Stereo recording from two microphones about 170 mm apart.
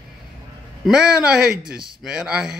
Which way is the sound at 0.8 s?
5° right (ahead or behind).